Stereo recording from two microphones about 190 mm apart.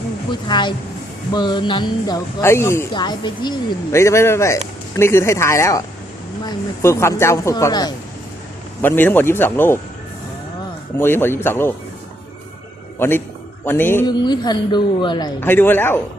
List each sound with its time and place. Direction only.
0.3 s speech: 25° left (ahead or behind)
8.8 s speech: 10° left (ahead or behind)
11.0 s speech: 10° left (ahead or behind)
13.0 s speech: 10° left (ahead or behind)
14.1 s speech: 20° left (ahead or behind)
15.4 s speech: 10° left (ahead or behind)